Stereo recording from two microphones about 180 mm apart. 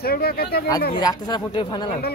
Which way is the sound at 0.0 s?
60° left (ahead or behind).